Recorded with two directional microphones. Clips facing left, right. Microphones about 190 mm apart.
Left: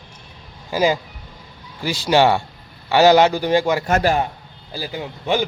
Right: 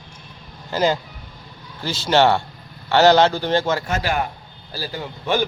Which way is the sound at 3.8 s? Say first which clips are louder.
Left 7 dB; 45° left (ahead or behind).